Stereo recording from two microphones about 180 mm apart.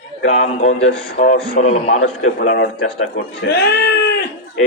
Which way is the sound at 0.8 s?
40° left (ahead or behind).